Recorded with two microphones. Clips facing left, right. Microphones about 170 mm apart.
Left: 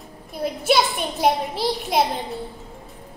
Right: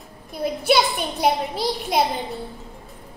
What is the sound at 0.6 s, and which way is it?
A child's voice, centre (ahead or behind).